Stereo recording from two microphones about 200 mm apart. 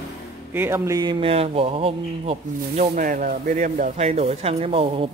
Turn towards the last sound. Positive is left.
turn(degrees=-30)  # may be behind; listen again after turning